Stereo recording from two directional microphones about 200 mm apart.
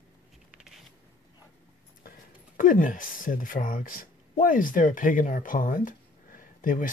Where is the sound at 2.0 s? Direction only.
40° left (ahead or behind).